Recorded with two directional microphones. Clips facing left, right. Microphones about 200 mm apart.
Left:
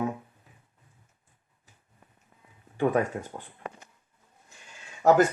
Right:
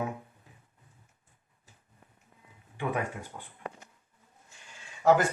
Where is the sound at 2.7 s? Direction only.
40° left (ahead or behind).